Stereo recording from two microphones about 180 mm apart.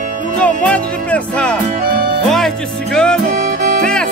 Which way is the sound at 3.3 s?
55° right (ahead or behind).